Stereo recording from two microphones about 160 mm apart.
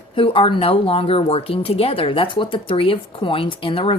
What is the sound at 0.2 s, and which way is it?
A woman's voice, 35° left (ahead or behind).